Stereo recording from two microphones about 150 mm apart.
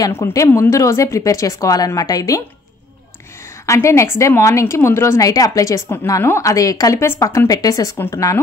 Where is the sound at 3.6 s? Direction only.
20° left (ahead or behind).